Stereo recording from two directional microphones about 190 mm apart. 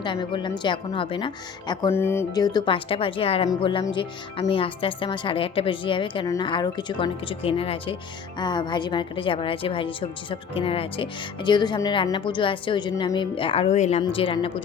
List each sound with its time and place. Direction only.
0.0 s a woman's voice: 25° left (ahead or behind)